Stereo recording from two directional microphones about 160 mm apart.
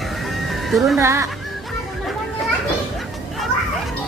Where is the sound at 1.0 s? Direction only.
20° right (ahead or behind).